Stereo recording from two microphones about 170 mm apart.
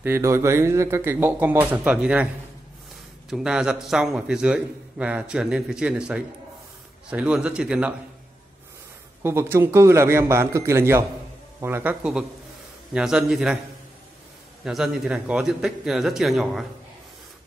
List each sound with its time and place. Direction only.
0.0 s speech: 15° right (ahead or behind)
3.3 s a man's voice: 5° right (ahead or behind)
9.2 s a man's voice: 15° right (ahead or behind)
14.6 s a man's voice: 5° right (ahead or behind)